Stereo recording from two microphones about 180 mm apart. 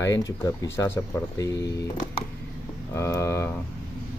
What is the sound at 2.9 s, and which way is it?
Speech, 15° left (ahead or behind).